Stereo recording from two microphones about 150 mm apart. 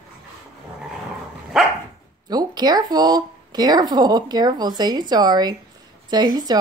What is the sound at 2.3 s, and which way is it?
Speech, 25° right (ahead or behind).